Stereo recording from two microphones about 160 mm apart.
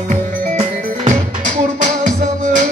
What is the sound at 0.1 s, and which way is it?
Music, 50° right (ahead or behind).